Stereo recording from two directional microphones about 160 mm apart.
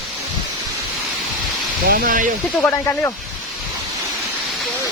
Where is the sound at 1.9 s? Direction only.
60° right (ahead or behind).